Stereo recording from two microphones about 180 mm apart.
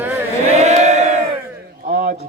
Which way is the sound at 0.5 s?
40° right (ahead or behind).